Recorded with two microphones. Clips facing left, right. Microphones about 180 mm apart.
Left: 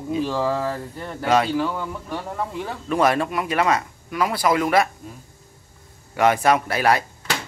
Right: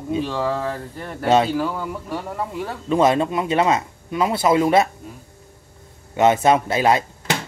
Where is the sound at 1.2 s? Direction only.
25° right (ahead or behind).